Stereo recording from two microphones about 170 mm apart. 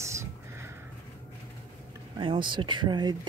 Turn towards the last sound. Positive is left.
turn(degrees=-25)  # may be behind; listen again after turning